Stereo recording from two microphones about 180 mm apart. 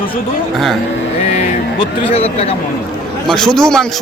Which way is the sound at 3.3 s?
Centre (ahead or behind).